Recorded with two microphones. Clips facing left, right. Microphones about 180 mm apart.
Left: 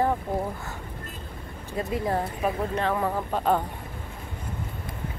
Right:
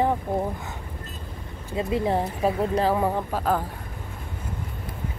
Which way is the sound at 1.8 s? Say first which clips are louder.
Right 3 dB; 25° right (ahead or behind).